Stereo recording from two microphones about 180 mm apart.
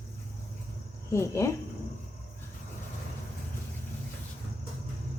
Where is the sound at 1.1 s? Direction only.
15° left (ahead or behind).